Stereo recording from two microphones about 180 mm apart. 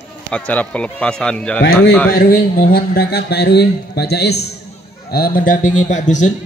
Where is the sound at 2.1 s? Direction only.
55° left (ahead or behind).